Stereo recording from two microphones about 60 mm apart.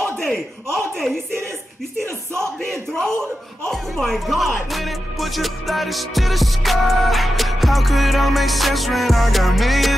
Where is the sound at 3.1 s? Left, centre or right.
Right.